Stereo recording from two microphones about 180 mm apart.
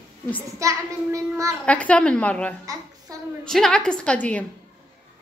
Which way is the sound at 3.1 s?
20° right (ahead or behind).